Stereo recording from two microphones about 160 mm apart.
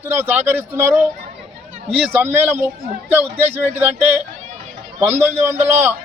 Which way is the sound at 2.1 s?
15° right (ahead or behind).